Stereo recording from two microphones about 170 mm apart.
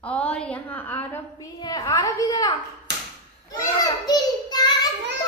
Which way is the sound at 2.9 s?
90° right.